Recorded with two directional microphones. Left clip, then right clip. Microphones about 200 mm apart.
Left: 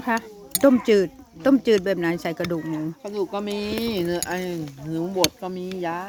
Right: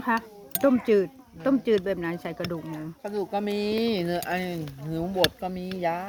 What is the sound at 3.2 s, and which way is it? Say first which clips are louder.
Speech: left 1 dB; 30° right (ahead or behind).